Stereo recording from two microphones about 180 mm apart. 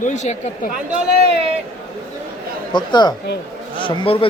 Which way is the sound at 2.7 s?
25° left (ahead or behind).